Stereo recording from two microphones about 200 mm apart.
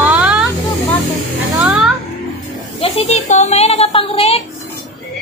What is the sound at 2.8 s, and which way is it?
Speech, 35° left (ahead or behind).